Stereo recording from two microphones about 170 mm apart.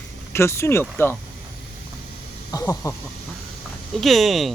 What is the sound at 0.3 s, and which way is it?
Speech, 15° left (ahead or behind).